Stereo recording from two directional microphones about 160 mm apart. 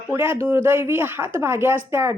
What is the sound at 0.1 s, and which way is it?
A woman's voice, 15° right (ahead or behind).